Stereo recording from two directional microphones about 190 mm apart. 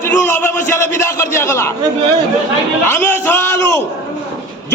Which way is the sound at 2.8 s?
10° left (ahead or behind).